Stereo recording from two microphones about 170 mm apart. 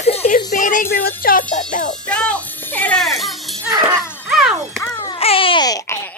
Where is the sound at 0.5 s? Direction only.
50° left (ahead or behind).